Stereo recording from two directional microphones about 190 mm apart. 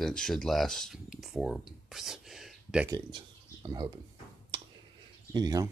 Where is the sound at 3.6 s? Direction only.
20° right (ahead or behind).